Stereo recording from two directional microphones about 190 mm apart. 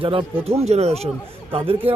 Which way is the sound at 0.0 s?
30° right (ahead or behind).